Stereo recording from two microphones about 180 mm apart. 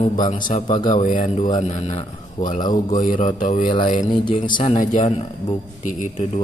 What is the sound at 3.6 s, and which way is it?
Speech, 25° left (ahead or behind).